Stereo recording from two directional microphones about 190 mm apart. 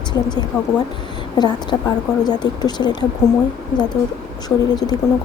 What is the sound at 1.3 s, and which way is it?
Speech, 25° left (ahead or behind).